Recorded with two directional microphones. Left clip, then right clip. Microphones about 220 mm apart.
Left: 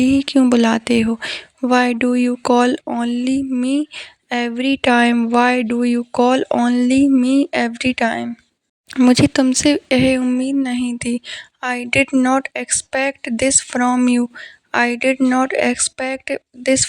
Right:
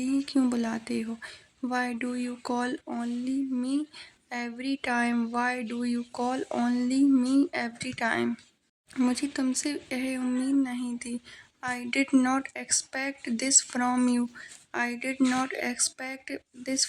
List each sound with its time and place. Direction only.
0.0 s speech: 40° left (ahead or behind)